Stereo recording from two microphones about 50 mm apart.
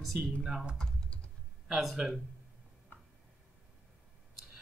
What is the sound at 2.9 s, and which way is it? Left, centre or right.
Tick-tock, left.